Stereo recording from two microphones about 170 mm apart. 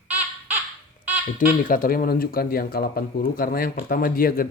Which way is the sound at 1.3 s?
50° left (ahead or behind).